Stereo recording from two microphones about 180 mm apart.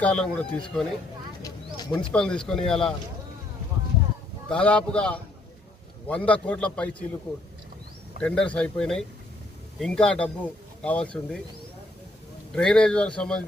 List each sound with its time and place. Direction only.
0.0 s speech: 5° left (ahead or behind)
1.4 s a sound: 20° left (ahead or behind)
2.1 s speech: 5° left (ahead or behind)
4.4 s a man's voice: 5° left (ahead or behind)
8.2 s speech: 5° left (ahead or behind)
12.5 s speech: 5° left (ahead or behind)